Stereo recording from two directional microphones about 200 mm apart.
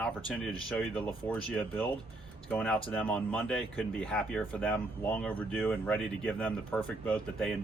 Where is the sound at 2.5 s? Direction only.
5° left (ahead or behind).